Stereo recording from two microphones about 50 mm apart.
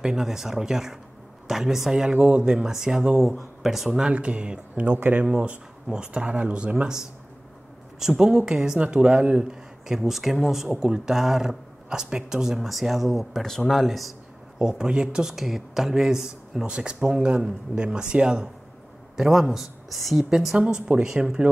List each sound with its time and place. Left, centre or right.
0.0 s a man's voice: centre
3.2 s speech: centre
4.1 s speech: right
4.9 s speech: right
5.2 s a man's voice: right
9.9 s a man's voice: centre
13.4 s speech: centre
14.6 s a man's voice: centre
15.2 s a man's voice: centre
20.2 s a man's voice: centre